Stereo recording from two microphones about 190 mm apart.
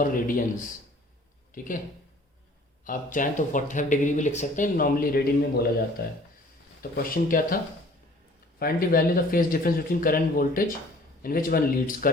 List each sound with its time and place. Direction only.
0.0 s speech: 45° left (ahead or behind)
1.5 s speech: 45° left (ahead or behind)
2.8 s speech: 45° left (ahead or behind)
6.9 s speech: 50° left (ahead or behind)